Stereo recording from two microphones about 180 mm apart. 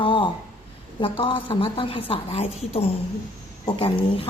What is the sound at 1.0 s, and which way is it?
A woman's voice, 30° left (ahead or behind).